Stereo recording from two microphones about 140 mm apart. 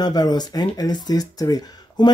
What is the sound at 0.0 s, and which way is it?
Speech, 30° left (ahead or behind).